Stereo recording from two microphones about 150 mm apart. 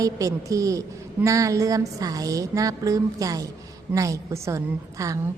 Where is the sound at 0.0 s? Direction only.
20° right (ahead or behind).